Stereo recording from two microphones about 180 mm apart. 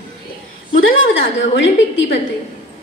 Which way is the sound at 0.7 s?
90° left.